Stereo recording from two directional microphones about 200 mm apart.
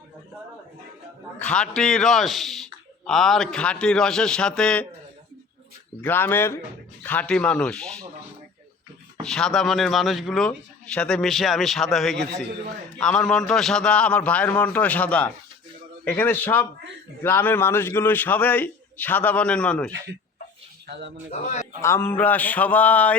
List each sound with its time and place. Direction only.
1.4 s speech: 5° left (ahead or behind)
6.0 s a man's voice: 10° left (ahead or behind)
9.2 s a man's voice: centre (ahead or behind)
20.8 s speech: 55° right (ahead or behind)
21.2 s a man's voice: 35° left (ahead or behind)
21.8 s a man's voice: 15° left (ahead or behind)